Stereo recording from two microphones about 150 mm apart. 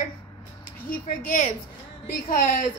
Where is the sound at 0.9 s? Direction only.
60° left (ahead or behind).